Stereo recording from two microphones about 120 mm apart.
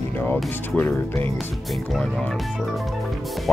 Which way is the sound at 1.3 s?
Centre (ahead or behind).